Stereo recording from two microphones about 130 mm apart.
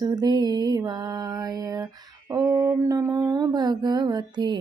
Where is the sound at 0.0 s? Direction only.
30° right (ahead or behind).